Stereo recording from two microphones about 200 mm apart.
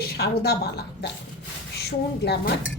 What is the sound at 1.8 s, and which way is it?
Speech, 55° left (ahead or behind).